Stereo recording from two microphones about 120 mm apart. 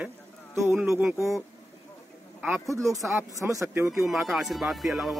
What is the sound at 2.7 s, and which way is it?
Speech, 25° right (ahead or behind).